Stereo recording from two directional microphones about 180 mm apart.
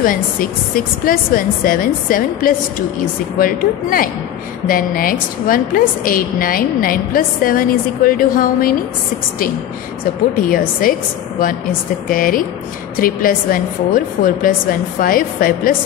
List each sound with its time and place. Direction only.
1.0 s a woman's voice: 50° left (ahead or behind)
10.3 s a woman's voice: 50° left (ahead or behind)